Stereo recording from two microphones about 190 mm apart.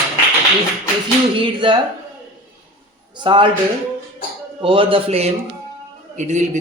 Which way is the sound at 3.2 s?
25° right (ahead or behind).